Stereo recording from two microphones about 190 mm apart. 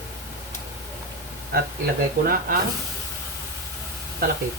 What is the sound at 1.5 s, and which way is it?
Speech, 50° right (ahead or behind).